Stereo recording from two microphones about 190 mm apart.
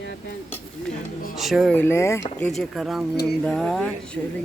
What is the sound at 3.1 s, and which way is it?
Speech, 55° left (ahead or behind).